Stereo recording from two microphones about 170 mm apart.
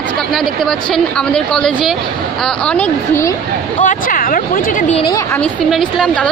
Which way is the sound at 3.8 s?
55° left (ahead or behind).